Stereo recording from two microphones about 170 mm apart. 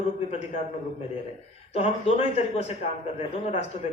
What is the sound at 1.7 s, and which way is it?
Speech, 40° left (ahead or behind).